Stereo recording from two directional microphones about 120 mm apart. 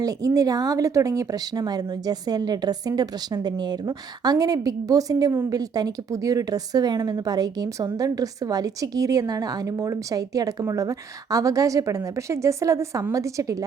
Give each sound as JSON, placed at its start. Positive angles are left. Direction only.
{"t": 0.0, "sound": "a woman's voice", "side_deg": -30}